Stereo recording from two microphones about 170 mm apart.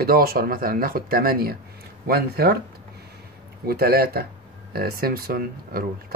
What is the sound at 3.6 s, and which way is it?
Speech, 65° right (ahead or behind).